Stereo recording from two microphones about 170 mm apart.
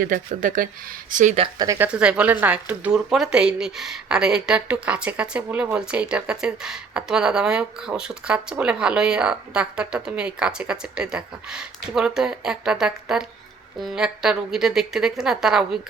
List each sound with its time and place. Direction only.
0.0 s speech: 50° right (ahead or behind)
1.4 s speech: 20° right (ahead or behind)
1.9 s speech: 5° right (ahead or behind)